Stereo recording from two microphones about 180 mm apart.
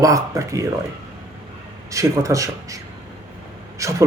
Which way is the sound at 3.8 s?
15° right (ahead or behind).